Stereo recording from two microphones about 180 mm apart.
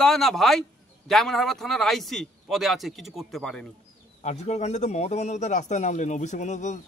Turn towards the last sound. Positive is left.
turn(degrees=40)  # may be behind; listen again after turning